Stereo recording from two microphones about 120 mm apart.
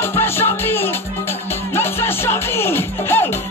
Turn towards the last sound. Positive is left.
turn(degrees=20)  # may be behind; listen again after turning